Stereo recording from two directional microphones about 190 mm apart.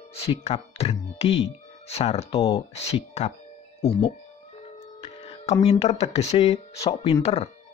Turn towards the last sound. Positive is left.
turn(degrees=35)  # may be behind; listen again after turning